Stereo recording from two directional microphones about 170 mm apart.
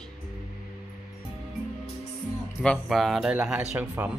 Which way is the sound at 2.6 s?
5° left (ahead or behind).